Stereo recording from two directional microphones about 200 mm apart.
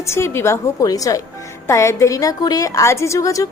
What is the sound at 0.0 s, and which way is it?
A woman's voice, 15° left (ahead or behind).